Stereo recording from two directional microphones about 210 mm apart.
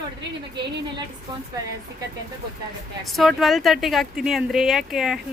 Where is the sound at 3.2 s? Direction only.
Centre (ahead or behind).